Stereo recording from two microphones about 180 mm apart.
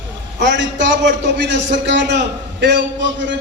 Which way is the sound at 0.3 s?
85° right.